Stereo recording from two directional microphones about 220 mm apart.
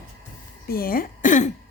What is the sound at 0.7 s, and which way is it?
Speech, 40° left (ahead or behind).